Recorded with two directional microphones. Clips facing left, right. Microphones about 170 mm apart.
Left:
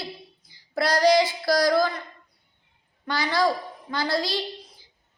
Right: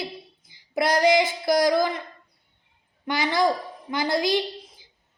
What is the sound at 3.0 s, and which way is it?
Speech, 20° right (ahead or behind).